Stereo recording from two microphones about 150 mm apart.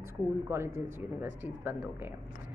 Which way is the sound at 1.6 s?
15° right (ahead or behind).